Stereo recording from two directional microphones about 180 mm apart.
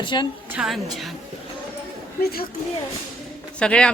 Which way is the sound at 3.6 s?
5° left (ahead or behind).